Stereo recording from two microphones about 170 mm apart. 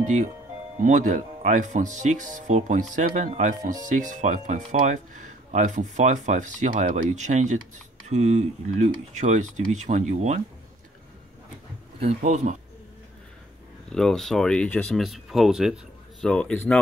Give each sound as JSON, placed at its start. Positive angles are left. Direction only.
{"t": 0.0, "sound": "speech", "side_deg": -45}
{"t": 12.0, "sound": "speech", "side_deg": -45}
{"t": 13.8, "sound": "speech", "side_deg": 5}